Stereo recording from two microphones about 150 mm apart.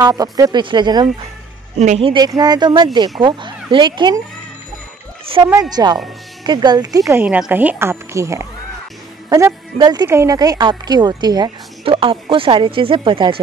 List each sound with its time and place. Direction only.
0.0 s a woman's voice: 25° right (ahead or behind)
1.8 s speech: 45° right (ahead or behind)
2.1 s a woman's voice: 25° right (ahead or behind)
5.2 s speech: 35° right (ahead or behind)
5.5 s a woman's voice: 25° right (ahead or behind)